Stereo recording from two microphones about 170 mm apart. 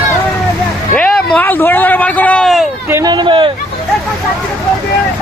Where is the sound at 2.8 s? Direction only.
15° right (ahead or behind).